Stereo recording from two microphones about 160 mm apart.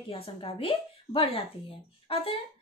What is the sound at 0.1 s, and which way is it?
A woman's voice, 35° left (ahead or behind).